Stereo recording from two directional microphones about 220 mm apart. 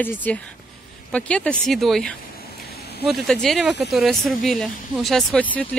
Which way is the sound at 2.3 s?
45° left (ahead or behind).